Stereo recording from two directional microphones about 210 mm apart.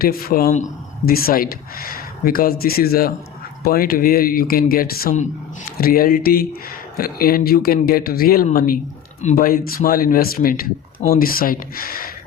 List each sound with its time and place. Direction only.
0.0 s speech: 45° left (ahead or behind)